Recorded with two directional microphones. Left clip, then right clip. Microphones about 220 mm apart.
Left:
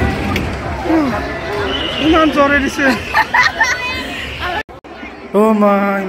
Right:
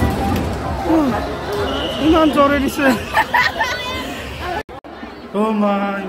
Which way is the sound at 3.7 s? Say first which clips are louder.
Left 3 dB; 45° right (ahead or behind).